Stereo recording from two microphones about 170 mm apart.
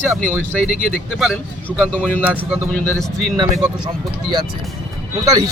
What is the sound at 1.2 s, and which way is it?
Speech, 5° right (ahead or behind).